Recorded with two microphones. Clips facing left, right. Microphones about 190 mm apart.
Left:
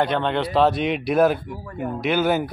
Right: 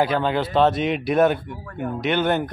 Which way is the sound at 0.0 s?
5° right (ahead or behind).